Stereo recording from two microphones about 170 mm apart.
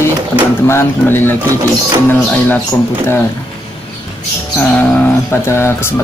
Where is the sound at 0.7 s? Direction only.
15° left (ahead or behind).